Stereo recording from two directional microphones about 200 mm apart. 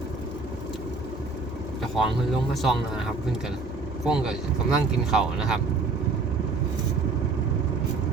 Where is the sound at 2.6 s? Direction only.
Centre (ahead or behind).